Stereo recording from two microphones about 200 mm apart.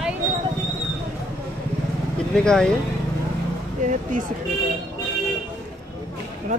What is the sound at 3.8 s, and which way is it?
Speech, 40° right (ahead or behind).